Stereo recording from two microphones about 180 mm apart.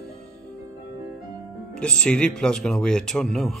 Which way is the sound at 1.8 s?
5° left (ahead or behind).